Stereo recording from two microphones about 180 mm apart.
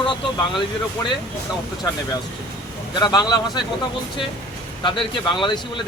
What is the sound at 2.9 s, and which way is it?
Speech, 25° left (ahead or behind).